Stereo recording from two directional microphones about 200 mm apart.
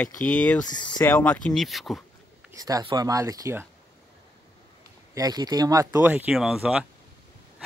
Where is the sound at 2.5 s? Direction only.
20° right (ahead or behind).